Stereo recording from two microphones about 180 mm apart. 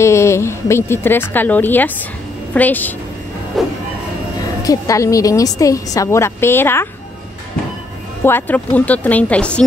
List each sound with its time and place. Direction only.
0.0 s a woman's voice: 15° left (ahead or behind)
3.6 s train: centre (ahead or behind)
4.6 s a woman's voice: 20° left (ahead or behind)
8.2 s a woman's voice: 10° left (ahead or behind)